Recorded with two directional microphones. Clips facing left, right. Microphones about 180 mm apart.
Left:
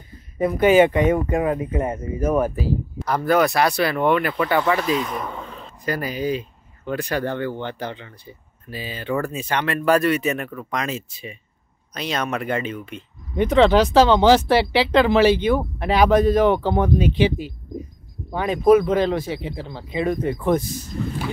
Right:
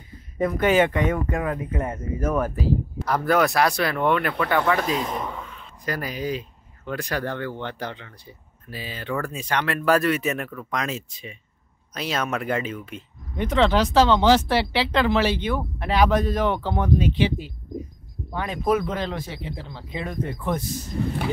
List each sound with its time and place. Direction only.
0.4 s speech: 10° left (ahead or behind)
3.1 s speech: centre (ahead or behind)
4.9 s speech: 30° right (ahead or behind)
5.4 s a sound: 35° left (ahead or behind)
5.9 s speech: centre (ahead or behind)